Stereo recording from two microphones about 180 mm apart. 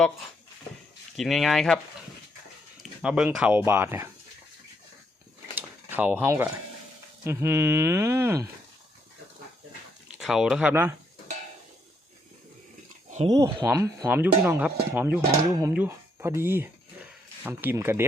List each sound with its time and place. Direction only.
1.1 s speech: centre (ahead or behind)
3.0 s speech: 5° right (ahead or behind)
5.5 s a sound: 10° right (ahead or behind)
7.3 s speech: 15° right (ahead or behind)
10.2 s speech: centre (ahead or behind)
13.1 s a sound: 40° right (ahead or behind)
13.3 s speech: 15° right (ahead or behind)